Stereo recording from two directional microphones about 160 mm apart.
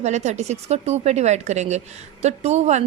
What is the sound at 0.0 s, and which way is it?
A woman's voice, 45° right (ahead or behind).